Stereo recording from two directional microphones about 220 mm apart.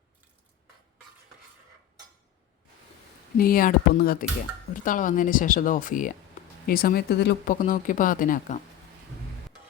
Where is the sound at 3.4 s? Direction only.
40° left (ahead or behind).